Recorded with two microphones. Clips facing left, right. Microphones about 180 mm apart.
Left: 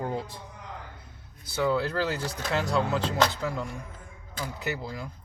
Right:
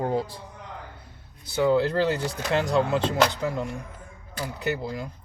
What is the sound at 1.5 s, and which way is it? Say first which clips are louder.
Speech: right 5 dB; 25° right (ahead or behind).